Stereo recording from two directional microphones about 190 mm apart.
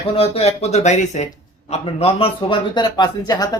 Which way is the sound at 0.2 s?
35° left (ahead or behind).